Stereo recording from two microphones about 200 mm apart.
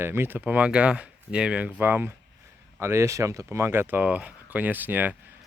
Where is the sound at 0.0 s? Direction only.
10° right (ahead or behind).